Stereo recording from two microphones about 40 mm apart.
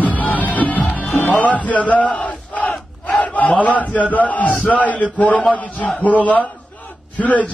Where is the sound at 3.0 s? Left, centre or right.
Left.